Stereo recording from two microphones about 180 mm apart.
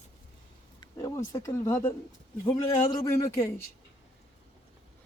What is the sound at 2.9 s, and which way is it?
Speech, 20° left (ahead or behind).